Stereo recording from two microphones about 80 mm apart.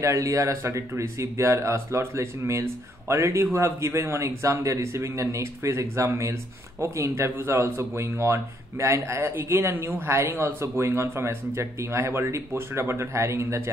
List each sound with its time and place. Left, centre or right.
0.0 s speech: right